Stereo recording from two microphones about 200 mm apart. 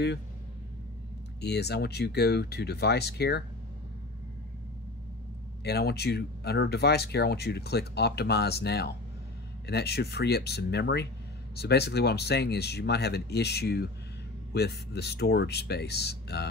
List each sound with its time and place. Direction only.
1.4 s speech: 55° left (ahead or behind)
5.6 s speech: 55° left (ahead or behind)